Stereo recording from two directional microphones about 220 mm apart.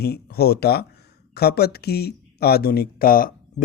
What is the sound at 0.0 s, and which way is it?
Speech, 45° left (ahead or behind).